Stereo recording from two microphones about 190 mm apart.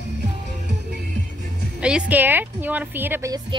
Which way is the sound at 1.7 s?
5° right (ahead or behind).